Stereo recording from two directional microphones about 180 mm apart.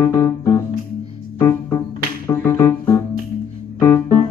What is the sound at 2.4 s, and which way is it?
Music, 15° left (ahead or behind).